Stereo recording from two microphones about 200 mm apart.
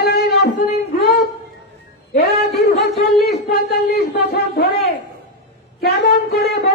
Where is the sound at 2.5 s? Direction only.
30° left (ahead or behind).